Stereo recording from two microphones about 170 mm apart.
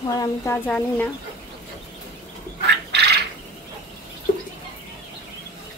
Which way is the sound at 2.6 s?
80° right.